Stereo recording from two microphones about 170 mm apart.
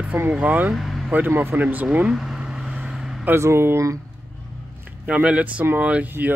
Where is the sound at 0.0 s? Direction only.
10° right (ahead or behind).